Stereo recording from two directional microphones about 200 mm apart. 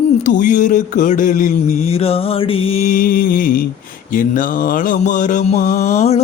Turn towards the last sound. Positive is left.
turn(degrees=35)  # may be behind; listen again after turning